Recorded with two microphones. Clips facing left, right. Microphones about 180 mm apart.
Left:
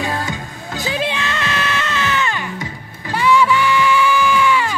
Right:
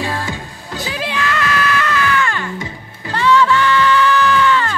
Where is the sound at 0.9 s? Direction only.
25° left (ahead or behind).